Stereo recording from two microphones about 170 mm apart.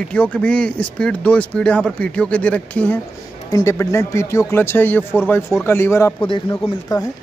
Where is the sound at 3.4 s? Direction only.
20° left (ahead or behind).